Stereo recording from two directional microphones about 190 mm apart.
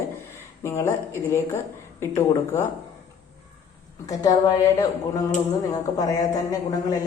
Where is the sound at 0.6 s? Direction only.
15° left (ahead or behind).